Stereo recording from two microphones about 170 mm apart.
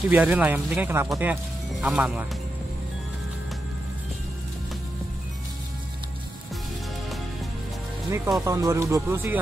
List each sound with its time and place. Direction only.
0.1 s speech: 10° right (ahead or behind)
8.1 s speech: 20° right (ahead or behind)